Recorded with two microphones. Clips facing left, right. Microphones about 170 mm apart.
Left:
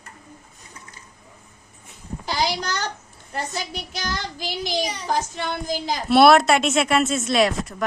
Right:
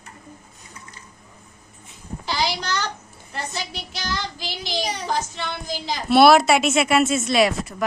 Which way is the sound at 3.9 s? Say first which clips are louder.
Right 1 dB; 45° left (ahead or behind).